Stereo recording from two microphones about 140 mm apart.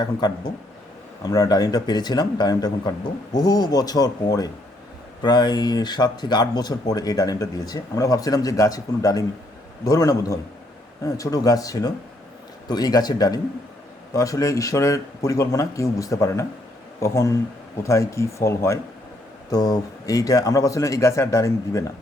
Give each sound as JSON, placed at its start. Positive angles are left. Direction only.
{"t": 0.0, "sound": "speech", "side_deg": 30}